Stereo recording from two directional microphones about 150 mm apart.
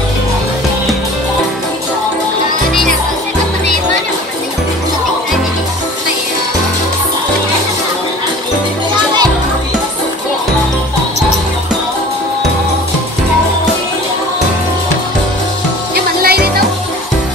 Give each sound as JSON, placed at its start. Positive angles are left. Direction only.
{"t": 15.9, "sound": "music", "side_deg": -90}